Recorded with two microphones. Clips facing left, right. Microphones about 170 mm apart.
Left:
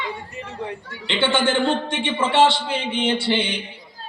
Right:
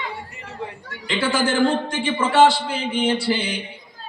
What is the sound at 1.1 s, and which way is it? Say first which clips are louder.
A man's voice: left 1 dB; 25° left (ahead or behind).